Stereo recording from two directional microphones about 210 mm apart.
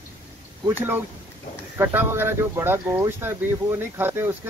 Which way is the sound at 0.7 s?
10° right (ahead or behind).